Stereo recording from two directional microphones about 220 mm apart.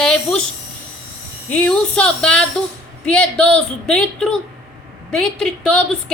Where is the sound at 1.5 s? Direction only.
5° left (ahead or behind).